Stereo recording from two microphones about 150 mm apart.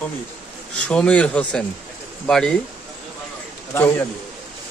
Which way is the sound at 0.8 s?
10° left (ahead or behind).